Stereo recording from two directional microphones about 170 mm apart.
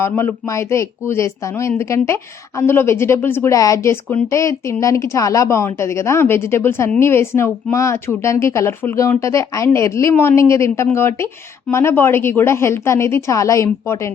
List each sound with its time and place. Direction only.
0.0 s a woman's voice: 15° left (ahead or behind)